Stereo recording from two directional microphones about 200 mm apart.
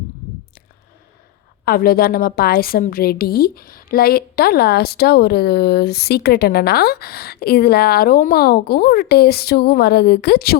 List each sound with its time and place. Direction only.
1.6 s a woman's voice: 50° left (ahead or behind)